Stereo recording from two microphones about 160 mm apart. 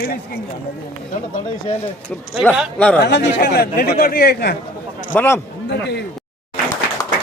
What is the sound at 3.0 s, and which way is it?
A man's voice, 90° left.